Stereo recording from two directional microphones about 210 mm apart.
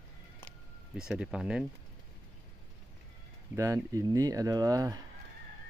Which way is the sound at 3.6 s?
15° right (ahead or behind).